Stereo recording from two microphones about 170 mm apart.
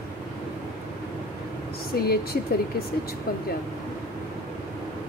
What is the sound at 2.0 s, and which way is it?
Speech, 70° left (ahead or behind).